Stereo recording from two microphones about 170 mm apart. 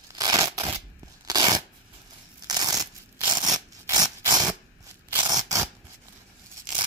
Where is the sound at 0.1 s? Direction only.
25° right (ahead or behind).